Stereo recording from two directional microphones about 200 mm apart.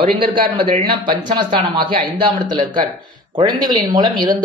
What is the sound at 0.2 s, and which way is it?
Speech, 25° right (ahead or behind).